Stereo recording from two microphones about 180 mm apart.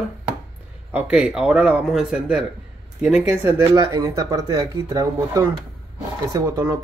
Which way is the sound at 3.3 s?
15° right (ahead or behind).